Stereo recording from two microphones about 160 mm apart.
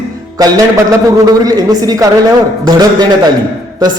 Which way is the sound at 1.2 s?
25° right (ahead or behind).